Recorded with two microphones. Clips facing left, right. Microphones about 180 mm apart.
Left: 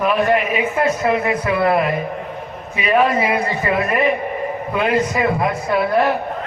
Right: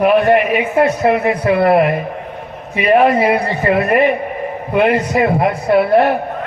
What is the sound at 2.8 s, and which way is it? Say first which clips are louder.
A man's voice: right 5 dB; 60° right (ahead or behind).